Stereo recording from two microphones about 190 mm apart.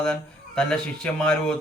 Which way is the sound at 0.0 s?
5° left (ahead or behind).